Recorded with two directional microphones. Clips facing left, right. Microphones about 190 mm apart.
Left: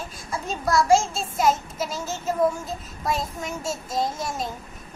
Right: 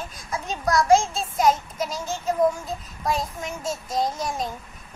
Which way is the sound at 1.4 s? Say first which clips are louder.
Right 1 dB; 5° left (ahead or behind).